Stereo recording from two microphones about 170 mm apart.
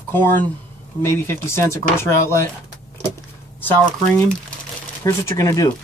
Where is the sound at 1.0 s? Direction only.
15° left (ahead or behind).